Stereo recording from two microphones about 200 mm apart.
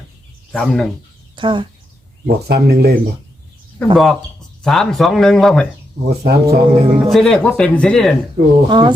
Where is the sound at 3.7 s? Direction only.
Centre (ahead or behind).